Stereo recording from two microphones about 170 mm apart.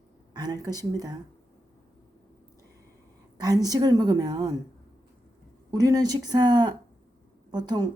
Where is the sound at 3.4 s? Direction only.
25° right (ahead or behind).